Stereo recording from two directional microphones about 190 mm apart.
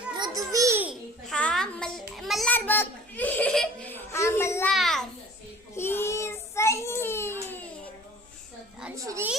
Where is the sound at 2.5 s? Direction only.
10° left (ahead or behind).